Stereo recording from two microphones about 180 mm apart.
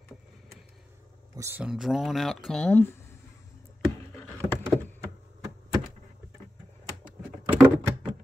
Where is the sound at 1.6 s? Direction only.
5° right (ahead or behind).